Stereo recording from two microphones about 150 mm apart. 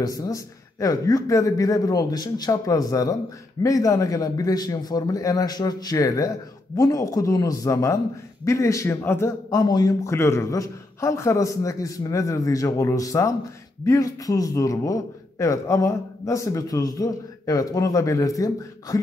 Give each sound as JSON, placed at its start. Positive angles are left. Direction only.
{"t": 0.0, "sound": "a man's voice", "side_deg": 25}